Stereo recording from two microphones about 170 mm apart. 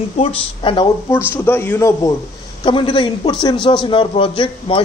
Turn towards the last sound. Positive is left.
turn(degrees=30)  # may be behind; listen again after turning